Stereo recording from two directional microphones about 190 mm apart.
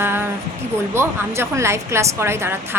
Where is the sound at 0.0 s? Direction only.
10° right (ahead or behind).